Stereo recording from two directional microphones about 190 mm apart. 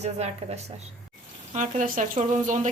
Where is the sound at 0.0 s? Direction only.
35° right (ahead or behind).